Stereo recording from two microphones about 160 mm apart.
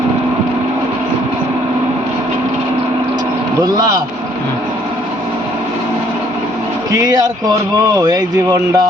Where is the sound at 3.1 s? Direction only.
25° right (ahead or behind).